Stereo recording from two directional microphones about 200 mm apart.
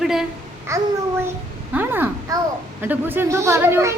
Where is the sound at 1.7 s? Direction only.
10° right (ahead or behind).